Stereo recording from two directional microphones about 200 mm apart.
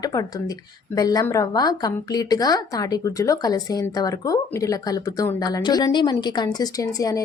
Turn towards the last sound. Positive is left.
turn(degrees=15)  # may be behind; listen again after turning